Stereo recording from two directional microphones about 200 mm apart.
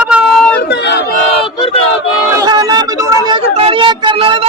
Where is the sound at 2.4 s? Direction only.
20° right (ahead or behind).